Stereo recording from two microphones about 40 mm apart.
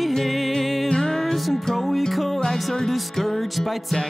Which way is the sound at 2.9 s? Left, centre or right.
Centre.